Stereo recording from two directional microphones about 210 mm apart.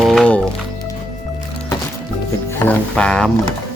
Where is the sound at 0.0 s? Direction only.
Centre (ahead or behind).